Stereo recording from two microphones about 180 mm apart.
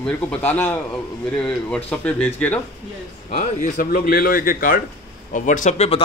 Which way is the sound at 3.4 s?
50° left (ahead or behind).